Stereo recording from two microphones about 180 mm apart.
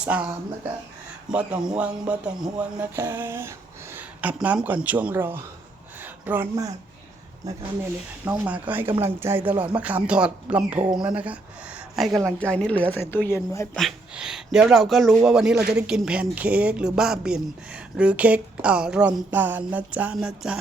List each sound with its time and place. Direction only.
0.0 s speech: 5° right (ahead or behind)
1.3 s speech: 5° right (ahead or behind)
6.0 s a sound: 10° right (ahead or behind)
7.4 s speech: 20° right (ahead or behind)
8.2 s speech: 10° right (ahead or behind); by 13.7 s 15° left (ahead or behind)
13.7 s speech: centre (ahead or behind)